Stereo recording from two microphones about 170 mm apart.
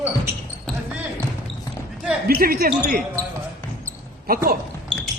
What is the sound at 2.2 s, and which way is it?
Speech, 60° right (ahead or behind).